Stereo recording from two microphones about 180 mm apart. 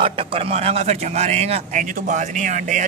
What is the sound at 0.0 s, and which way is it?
A man's voice, 30° right (ahead or behind).